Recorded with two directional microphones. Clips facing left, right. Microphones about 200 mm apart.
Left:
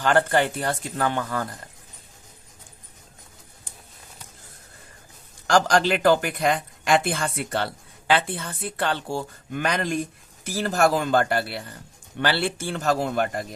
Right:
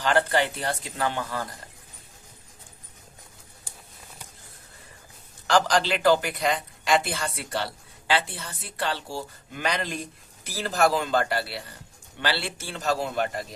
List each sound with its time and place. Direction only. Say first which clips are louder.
0.0 s speech: left 3 dB; 50° left (ahead or behind)
5.5 s speech: left 3 dB; 45° left (ahead or behind)